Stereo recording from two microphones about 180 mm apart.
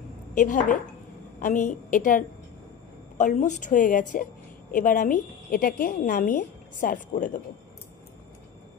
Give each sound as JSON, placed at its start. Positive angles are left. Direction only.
{"t": 0.3, "sound": "a woman's voice", "side_deg": 45}